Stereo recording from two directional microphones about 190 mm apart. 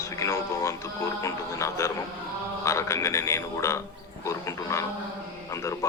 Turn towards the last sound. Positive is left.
turn(degrees=15)  # may be behind; listen again after turning